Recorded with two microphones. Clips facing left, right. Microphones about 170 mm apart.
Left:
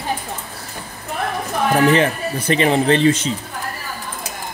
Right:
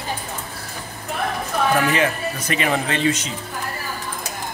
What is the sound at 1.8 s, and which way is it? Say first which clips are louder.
Speech: left 5 dB; 30° left (ahead or behind).